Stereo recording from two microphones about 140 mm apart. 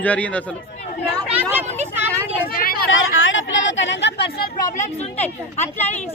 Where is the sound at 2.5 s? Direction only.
90° left.